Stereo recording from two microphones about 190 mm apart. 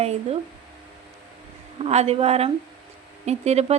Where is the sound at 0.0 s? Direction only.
35° right (ahead or behind).